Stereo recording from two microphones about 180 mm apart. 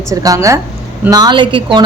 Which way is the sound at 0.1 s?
20° right (ahead or behind).